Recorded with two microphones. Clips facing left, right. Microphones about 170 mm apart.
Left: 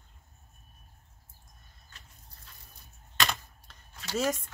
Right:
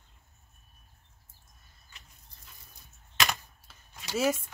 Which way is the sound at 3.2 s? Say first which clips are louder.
Even; 10° right (ahead or behind).